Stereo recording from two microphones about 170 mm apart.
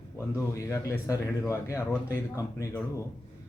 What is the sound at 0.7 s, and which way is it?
Speech, 20° left (ahead or behind).